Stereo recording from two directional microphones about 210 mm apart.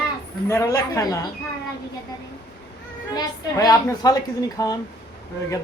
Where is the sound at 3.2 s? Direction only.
20° left (ahead or behind).